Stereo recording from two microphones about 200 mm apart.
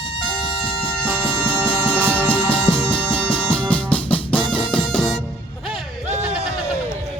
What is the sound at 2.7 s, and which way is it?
Music, 5° left (ahead or behind).